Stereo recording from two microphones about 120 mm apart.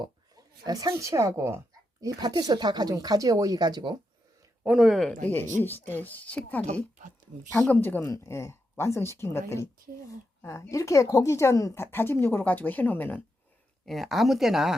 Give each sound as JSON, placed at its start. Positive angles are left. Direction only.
{"t": 0.0, "sound": "speech", "side_deg": -35}
{"t": 4.6, "sound": "speech", "side_deg": -5}
{"t": 5.2, "sound": "speech", "side_deg": 15}
{"t": 13.8, "sound": "speech", "side_deg": 0}